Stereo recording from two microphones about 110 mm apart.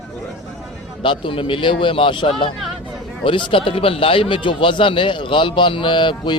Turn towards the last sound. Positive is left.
turn(degrees=45)  # may be behind; listen again after turning